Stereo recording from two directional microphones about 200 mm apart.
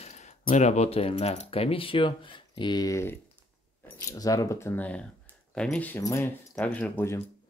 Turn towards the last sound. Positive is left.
turn(degrees=10)  # may be behind; listen again after turning